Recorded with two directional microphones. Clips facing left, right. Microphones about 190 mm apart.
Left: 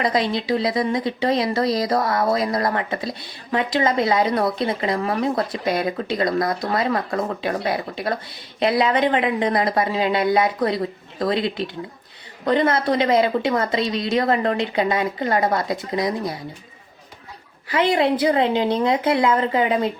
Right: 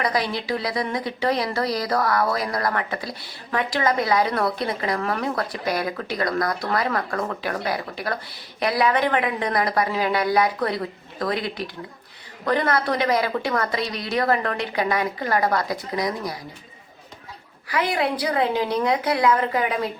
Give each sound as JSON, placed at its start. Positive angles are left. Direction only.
{"t": 0.0, "sound": "speech", "side_deg": 25}
{"t": 17.7, "sound": "speech", "side_deg": 25}